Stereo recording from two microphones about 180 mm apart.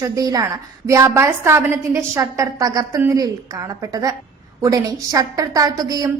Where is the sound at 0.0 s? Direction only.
20° right (ahead or behind).